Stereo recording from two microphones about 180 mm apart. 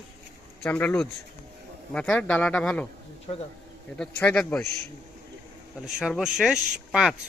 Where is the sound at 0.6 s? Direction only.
5° left (ahead or behind).